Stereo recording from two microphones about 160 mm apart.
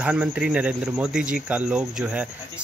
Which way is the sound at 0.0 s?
5° right (ahead or behind).